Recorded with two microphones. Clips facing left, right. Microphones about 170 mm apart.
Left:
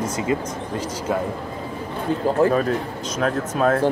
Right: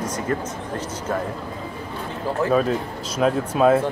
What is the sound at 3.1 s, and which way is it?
Speech, 5° right (ahead or behind).